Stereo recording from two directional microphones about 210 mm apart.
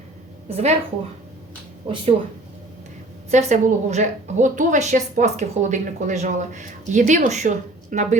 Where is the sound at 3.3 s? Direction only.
35° right (ahead or behind).